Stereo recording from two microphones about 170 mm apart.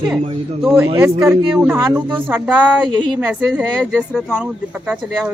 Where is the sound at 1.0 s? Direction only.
15° right (ahead or behind).